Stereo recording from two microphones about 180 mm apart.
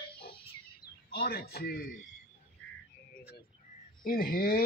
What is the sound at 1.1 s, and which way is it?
Speech, 60° left (ahead or behind).